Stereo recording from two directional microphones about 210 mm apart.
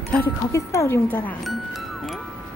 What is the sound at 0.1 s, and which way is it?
Speech, 10° left (ahead or behind).